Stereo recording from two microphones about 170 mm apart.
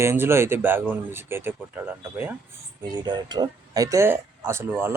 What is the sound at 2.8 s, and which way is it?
Speech, 25° right (ahead or behind).